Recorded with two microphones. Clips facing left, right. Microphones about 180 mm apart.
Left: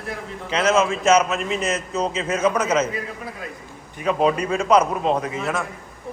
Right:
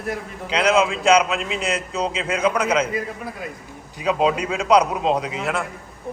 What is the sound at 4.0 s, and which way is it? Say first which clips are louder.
A man's voice: even; 10° right (ahead or behind).